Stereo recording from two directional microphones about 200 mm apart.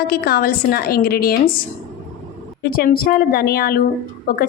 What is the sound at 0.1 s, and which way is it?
A woman's voice, 50° left (ahead or behind).